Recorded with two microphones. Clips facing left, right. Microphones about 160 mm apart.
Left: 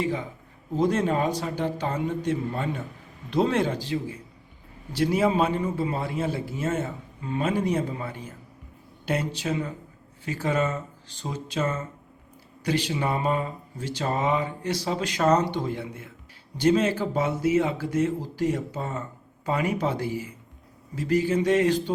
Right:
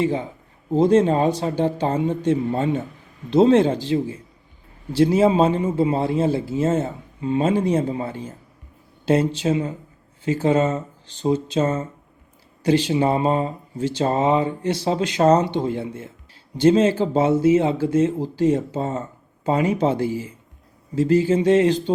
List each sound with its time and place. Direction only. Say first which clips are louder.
0.0 s speech: right 6 dB; 30° right (ahead or behind)